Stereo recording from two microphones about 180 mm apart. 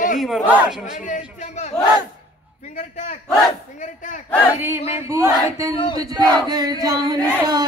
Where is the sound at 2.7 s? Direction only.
40° left (ahead or behind).